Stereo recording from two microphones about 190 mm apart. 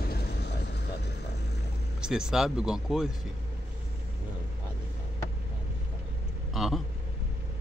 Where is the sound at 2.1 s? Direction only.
5° right (ahead or behind).